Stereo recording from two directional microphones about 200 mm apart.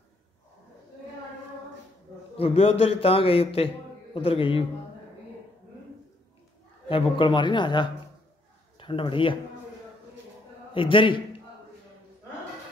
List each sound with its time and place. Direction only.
2.3 s a man's voice: 30° left (ahead or behind)
6.9 s a man's voice: 25° left (ahead or behind)
10.7 s a man's voice: 25° left (ahead or behind)